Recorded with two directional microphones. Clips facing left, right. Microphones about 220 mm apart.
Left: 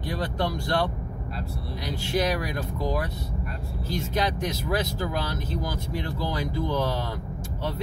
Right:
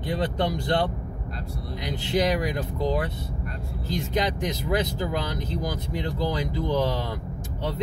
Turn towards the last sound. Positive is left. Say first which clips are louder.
# right 2 dB
turn(degrees=-15)  # may be behind; listen again after turning